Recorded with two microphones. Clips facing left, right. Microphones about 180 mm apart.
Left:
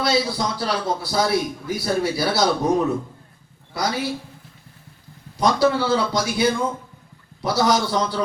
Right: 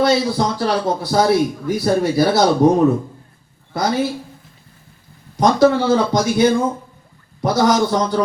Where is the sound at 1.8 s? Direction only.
50° right (ahead or behind).